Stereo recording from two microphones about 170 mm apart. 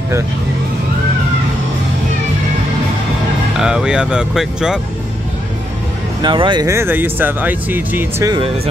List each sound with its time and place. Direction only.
3.5 s speech: 5° right (ahead or behind)
6.2 s speech: 30° right (ahead or behind)
6.7 s speech: 15° right (ahead or behind)